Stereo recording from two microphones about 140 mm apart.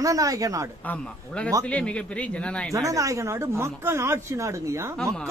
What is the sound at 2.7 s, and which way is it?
Speech, 25° right (ahead or behind).